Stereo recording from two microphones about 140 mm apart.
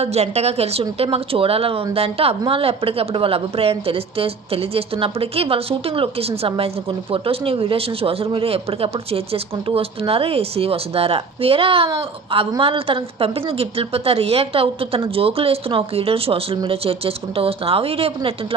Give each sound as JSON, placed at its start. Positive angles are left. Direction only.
{"t": 0.0, "sound": "a woman's voice", "side_deg": -50}